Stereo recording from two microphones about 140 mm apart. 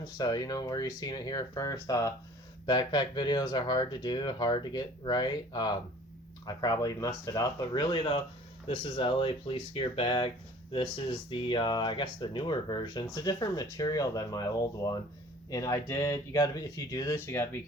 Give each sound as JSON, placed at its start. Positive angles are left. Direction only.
{"t": 0.0, "sound": "speech", "side_deg": 25}